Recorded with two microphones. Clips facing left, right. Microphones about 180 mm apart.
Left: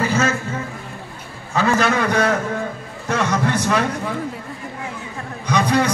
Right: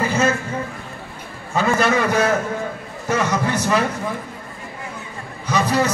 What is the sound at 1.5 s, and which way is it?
A man's voice, 10° right (ahead or behind).